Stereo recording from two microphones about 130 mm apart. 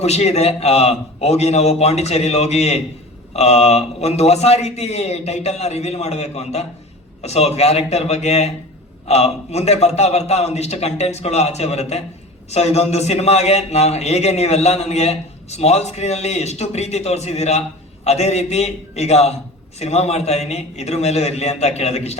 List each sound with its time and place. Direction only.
0.0 s a man's voice: 55° left (ahead or behind)